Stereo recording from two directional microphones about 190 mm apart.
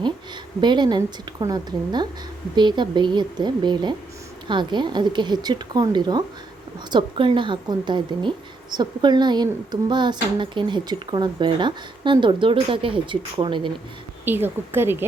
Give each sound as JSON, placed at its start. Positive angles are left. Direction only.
{"t": 0.6, "sound": "speech", "side_deg": -25}
{"t": 14.3, "sound": "a woman's voice", "side_deg": -10}